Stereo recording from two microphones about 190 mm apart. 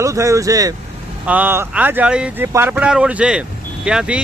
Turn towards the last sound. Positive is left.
turn(degrees=-5)  # may be behind; listen again after turning